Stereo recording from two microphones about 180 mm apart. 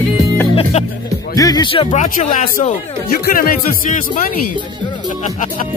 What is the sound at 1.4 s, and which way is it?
Speech, 20° left (ahead or behind).